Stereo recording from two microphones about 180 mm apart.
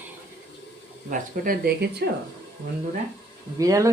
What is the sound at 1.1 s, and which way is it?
Speech, 50° right (ahead or behind).